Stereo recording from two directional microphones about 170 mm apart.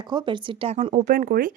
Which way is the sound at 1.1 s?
55° right (ahead or behind).